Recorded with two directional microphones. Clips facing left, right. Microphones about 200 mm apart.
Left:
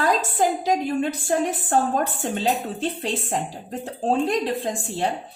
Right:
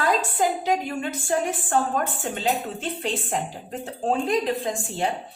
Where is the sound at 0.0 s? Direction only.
40° left (ahead or behind).